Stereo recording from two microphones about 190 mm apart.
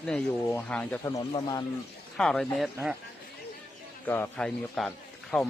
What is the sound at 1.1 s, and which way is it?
Speech, 20° left (ahead or behind).